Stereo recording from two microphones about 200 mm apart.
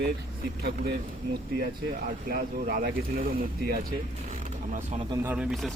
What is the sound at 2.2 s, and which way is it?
Speech, 50° right (ahead or behind).